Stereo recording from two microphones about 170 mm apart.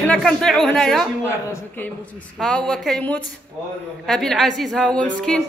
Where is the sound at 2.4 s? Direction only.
5° left (ahead or behind).